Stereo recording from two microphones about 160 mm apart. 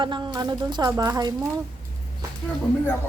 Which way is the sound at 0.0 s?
30° right (ahead or behind).